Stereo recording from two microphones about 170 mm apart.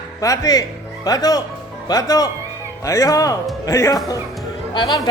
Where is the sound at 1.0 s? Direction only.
20° left (ahead or behind).